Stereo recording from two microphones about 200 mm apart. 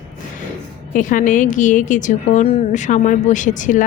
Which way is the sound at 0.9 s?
40° left (ahead or behind).